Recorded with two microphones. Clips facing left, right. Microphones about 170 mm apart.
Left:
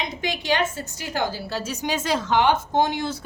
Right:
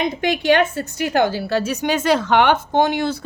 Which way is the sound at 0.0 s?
60° right (ahead or behind).